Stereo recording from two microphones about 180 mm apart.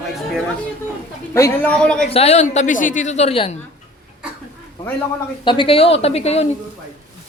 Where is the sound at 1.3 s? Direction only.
10° left (ahead or behind).